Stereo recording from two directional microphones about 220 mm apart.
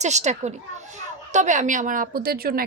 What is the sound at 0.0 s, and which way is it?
A woman's voice, 30° right (ahead or behind).